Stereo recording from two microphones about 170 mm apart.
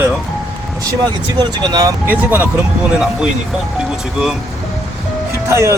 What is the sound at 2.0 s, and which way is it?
Speech, 10° right (ahead or behind).